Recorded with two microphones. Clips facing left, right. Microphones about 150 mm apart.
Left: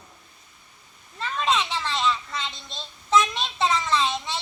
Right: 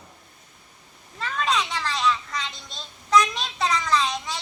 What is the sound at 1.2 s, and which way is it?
Children playing, centre (ahead or behind).